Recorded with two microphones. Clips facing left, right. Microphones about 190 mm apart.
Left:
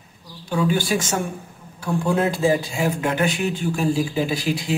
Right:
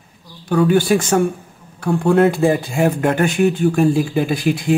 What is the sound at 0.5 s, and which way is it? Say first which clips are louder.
Speech: right 7 dB; 55° right (ahead or behind).